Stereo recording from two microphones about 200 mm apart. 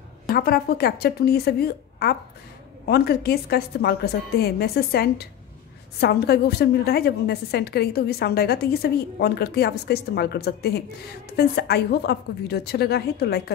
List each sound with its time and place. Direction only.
0.3 s a woman's voice: 50° left (ahead or behind)